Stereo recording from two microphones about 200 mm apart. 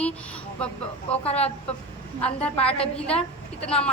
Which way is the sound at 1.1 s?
30° left (ahead or behind).